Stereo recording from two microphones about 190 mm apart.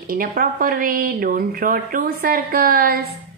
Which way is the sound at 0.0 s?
50° right (ahead or behind).